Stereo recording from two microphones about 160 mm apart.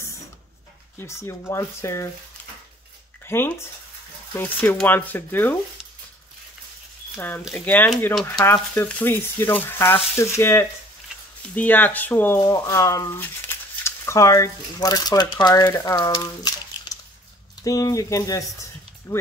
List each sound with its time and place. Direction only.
0.9 s speech: 15° left (ahead or behind)
3.3 s speech: 15° left (ahead or behind)
7.2 s speech: 10° left (ahead or behind)